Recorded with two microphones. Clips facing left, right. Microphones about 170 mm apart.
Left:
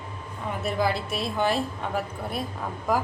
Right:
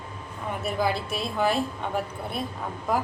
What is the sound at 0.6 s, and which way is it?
A woman's voice, centre (ahead or behind).